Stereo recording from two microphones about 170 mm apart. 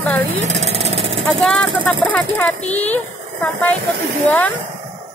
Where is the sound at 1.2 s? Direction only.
Centre (ahead or behind).